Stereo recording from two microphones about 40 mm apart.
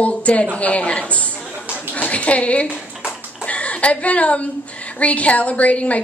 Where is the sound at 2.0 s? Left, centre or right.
Left.